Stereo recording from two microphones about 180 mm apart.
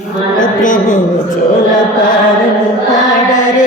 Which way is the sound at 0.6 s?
45° left (ahead or behind).